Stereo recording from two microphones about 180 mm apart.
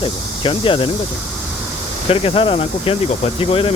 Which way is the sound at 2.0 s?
30° left (ahead or behind).